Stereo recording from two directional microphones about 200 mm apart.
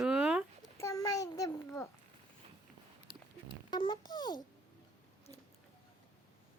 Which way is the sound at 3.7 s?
20° left (ahead or behind).